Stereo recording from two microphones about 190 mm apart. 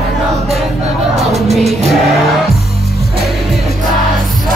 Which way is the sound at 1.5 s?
Centre (ahead or behind).